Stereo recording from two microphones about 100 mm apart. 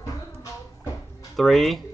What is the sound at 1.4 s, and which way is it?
Speech, centre (ahead or behind).